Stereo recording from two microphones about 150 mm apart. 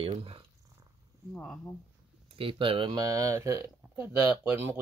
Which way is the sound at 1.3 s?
5° left (ahead or behind).